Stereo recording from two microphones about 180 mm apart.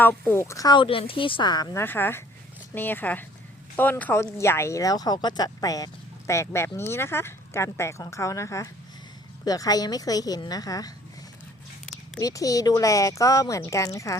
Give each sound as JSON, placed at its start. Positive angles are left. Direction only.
{"t": 0.0, "sound": "speech", "side_deg": 10}
{"t": 12.2, "sound": "speech", "side_deg": 20}